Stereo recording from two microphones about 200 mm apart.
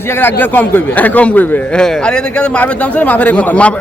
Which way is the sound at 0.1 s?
10° left (ahead or behind).